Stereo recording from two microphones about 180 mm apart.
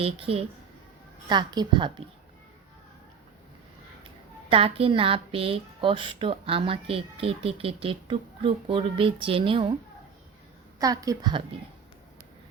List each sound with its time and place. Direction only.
0.0 s a woman's voice: 30° right (ahead or behind)
4.4 s a woman's voice: 30° right (ahead or behind)
10.8 s a woman's voice: 20° right (ahead or behind)